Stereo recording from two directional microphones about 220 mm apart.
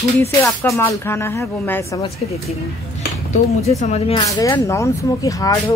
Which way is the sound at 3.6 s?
30° left (ahead or behind).